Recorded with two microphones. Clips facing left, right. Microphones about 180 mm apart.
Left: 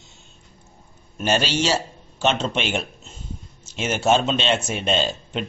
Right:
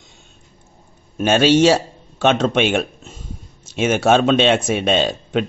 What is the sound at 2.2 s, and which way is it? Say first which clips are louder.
Speech: right 7 dB; 55° right (ahead or behind).